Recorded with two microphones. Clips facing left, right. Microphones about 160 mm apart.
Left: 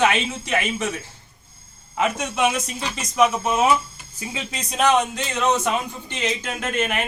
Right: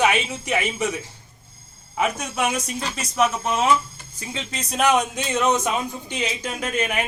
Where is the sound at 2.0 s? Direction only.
10° right (ahead or behind).